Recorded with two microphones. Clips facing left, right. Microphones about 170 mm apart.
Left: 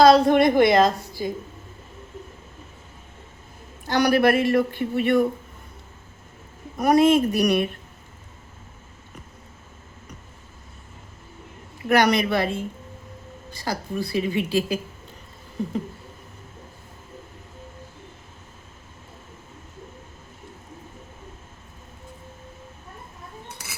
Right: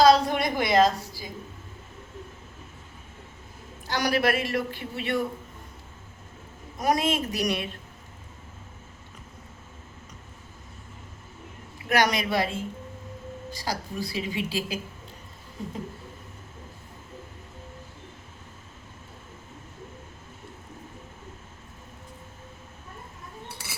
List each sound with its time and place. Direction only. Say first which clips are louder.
0.0 s a woman's voice: left 5 dB; 55° left (ahead or behind)
3.8 s speech: left 6 dB; 55° left (ahead or behind)
6.7 s a woman's voice: left 8 dB; 60° left (ahead or behind)
11.9 s a woman's voice: left 5 dB; 60° left (ahead or behind)
13.6 s a woman's voice: left 5 dB; 55° left (ahead or behind)